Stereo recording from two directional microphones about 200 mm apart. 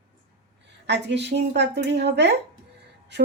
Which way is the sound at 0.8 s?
60° right (ahead or behind).